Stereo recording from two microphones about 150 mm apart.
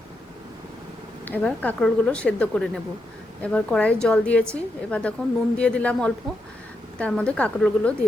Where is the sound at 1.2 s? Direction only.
10° left (ahead or behind).